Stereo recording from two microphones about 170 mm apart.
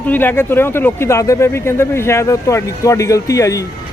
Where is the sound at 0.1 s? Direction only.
10° left (ahead or behind).